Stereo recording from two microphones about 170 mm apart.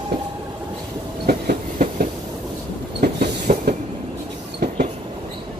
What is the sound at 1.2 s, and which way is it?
Train, 55° right (ahead or behind).